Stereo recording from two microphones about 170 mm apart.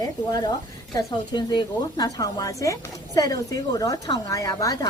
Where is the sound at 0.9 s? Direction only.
25° left (ahead or behind).